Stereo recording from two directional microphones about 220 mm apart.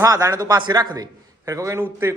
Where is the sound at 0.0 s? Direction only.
15° right (ahead or behind).